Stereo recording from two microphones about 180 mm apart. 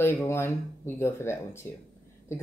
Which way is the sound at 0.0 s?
15° left (ahead or behind).